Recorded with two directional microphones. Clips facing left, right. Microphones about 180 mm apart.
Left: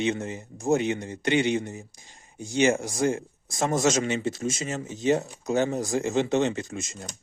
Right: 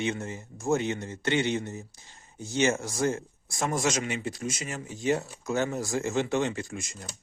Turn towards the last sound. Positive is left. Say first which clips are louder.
# left 4 dB
turn(degrees=25)  # may be behind; listen again after turning